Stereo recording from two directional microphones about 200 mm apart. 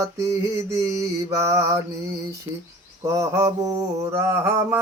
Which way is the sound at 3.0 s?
15° right (ahead or behind).